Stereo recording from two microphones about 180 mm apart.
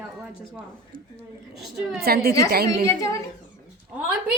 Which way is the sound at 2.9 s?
15° left (ahead or behind).